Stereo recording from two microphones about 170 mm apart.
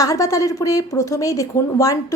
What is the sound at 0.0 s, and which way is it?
A woman's voice, 20° left (ahead or behind).